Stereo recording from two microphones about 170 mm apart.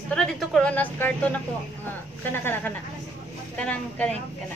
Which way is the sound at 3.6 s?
5° left (ahead or behind).